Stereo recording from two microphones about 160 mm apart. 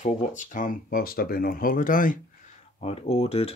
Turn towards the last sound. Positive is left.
turn(degrees=40)  # may be behind; listen again after turning